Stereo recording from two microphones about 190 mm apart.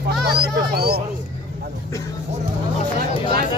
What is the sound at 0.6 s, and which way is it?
Speech, 55° right (ahead or behind).